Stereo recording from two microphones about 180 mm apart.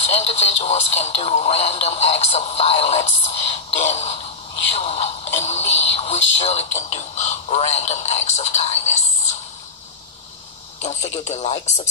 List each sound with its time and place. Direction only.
0.0 s speech: 35° left (ahead or behind)
10.8 s speech: 40° left (ahead or behind)